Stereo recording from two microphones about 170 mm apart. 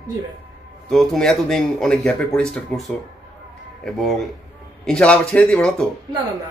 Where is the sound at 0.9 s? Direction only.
5° left (ahead or behind).